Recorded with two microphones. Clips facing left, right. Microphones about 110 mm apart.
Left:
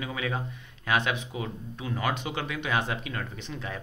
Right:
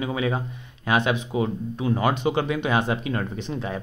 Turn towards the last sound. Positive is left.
turn(degrees=-25)  # may be behind; listen again after turning